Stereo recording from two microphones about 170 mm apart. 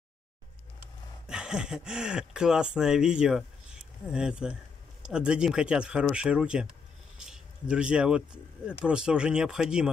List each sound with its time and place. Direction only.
1.2 s speech: 5° right (ahead or behind)
7.2 s a sound: 5° right (ahead or behind)
8.6 s speech: 5° right (ahead or behind)